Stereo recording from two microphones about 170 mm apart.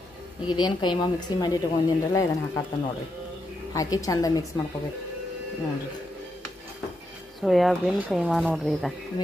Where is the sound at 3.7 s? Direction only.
20° left (ahead or behind).